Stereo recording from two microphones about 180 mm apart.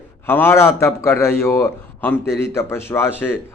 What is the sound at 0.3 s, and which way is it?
Speech, 10° left (ahead or behind).